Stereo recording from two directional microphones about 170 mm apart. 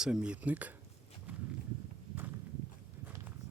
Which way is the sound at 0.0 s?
5° right (ahead or behind).